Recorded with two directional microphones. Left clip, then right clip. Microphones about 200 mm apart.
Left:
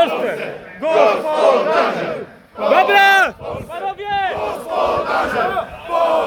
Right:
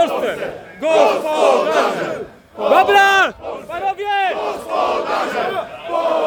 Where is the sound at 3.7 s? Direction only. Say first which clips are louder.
Right 3 dB; 35° right (ahead or behind).